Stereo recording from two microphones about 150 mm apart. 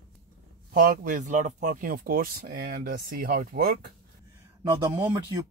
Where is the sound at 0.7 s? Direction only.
70° right (ahead or behind); by 1.7 s 55° right (ahead or behind).